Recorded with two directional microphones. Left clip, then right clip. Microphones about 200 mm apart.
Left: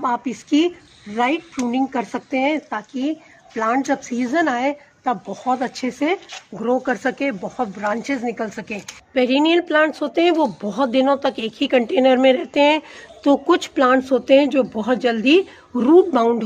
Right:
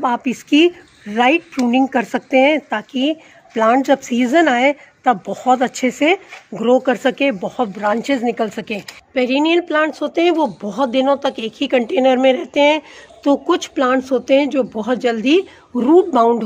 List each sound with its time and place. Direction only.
0.0 s speech: 60° right (ahead or behind)
9.1 s a woman's voice: centre (ahead or behind)